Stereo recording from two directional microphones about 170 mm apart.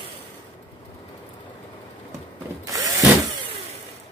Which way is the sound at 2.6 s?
20° right (ahead or behind).